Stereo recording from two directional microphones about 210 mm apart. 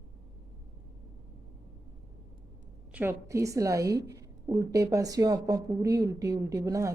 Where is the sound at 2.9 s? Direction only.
10° right (ahead or behind).